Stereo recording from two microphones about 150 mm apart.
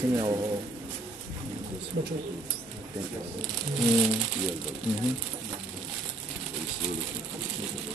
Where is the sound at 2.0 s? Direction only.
90° right.